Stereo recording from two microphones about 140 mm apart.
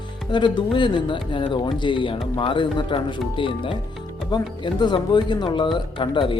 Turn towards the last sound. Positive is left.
turn(degrees=35)  # may be behind; listen again after turning